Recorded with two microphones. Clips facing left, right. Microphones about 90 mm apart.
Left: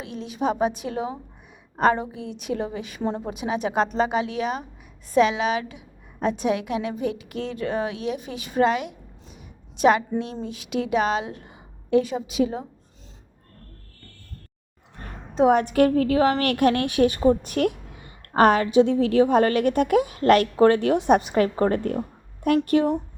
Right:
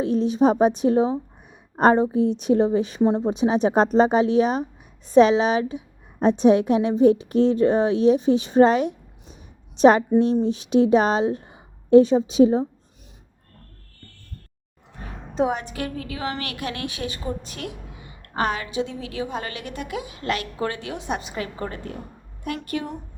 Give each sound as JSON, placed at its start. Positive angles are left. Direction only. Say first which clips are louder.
{"t": 0.0, "sound": "a woman's voice", "louder": "right 8 dB", "side_deg": -35}
{"t": 3.0, "sound": "a woman's voice", "louder": "right 6 dB", "side_deg": -20}
{"t": 14.9, "sound": "a sound", "louder": "left 1 dB", "side_deg": 0}
{"t": 15.4, "sound": "a woman's voice", "louder": "left 9 dB", "side_deg": 45}